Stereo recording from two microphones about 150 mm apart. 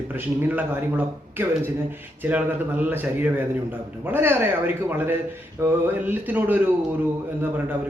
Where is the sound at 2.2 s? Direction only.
10° right (ahead or behind).